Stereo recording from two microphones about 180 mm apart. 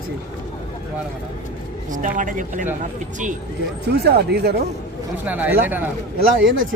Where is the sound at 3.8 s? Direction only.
65° right (ahead or behind).